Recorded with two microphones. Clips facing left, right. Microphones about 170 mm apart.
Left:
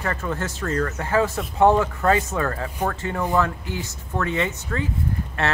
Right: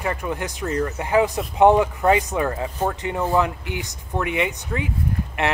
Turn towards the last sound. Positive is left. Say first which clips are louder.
# right 1 dB
turn(degrees=-15)  # may be behind; listen again after turning